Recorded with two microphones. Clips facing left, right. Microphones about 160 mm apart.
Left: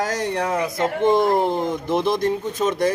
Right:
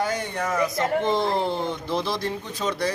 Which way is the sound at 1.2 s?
45° left (ahead or behind).